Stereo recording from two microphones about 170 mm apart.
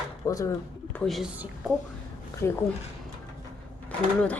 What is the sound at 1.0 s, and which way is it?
Speech, centre (ahead or behind).